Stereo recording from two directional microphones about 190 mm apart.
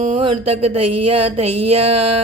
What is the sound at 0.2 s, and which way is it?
Speech, 30° right (ahead or behind).